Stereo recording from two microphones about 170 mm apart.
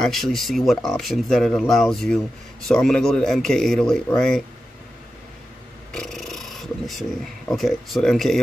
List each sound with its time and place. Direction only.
0.0 s speech: centre (ahead or behind)
5.9 s speech: centre (ahead or behind)